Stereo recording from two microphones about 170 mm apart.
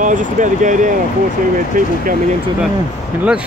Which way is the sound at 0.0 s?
50° right (ahead or behind).